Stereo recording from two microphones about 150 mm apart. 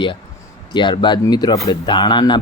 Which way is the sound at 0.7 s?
30° left (ahead or behind).